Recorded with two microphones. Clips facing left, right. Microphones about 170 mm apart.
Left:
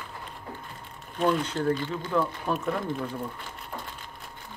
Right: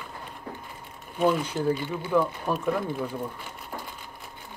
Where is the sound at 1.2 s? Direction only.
5° right (ahead or behind).